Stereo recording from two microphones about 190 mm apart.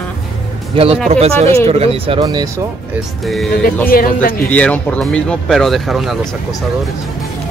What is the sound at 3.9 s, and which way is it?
Speech, 50° left (ahead or behind).